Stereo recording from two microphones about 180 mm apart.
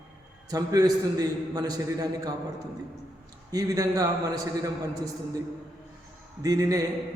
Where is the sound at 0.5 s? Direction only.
20° right (ahead or behind).